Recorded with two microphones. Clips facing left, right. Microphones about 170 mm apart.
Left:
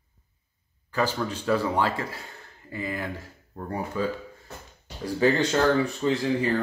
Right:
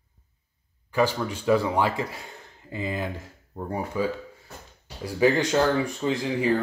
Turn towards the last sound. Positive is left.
turn(degrees=-15)  # may be behind; listen again after turning